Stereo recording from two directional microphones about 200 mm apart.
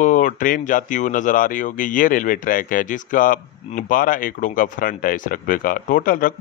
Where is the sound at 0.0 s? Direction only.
40° left (ahead or behind).